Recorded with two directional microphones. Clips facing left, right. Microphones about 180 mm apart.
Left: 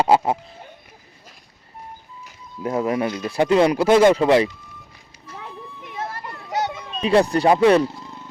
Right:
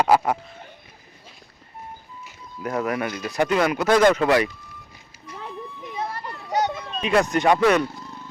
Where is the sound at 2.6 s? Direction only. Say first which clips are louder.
Left 3 dB; 25° left (ahead or behind).